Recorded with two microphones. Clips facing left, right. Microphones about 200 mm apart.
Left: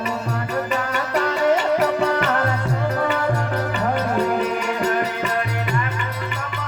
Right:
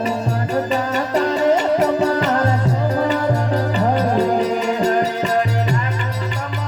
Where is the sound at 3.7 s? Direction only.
35° right (ahead or behind).